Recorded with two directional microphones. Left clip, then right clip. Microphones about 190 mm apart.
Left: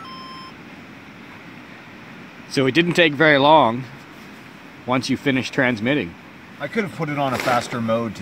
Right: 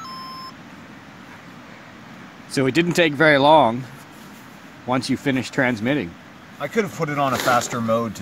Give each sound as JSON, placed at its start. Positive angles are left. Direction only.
{"t": 2.5, "sound": "speech", "side_deg": -5}
{"t": 4.8, "sound": "speech", "side_deg": -5}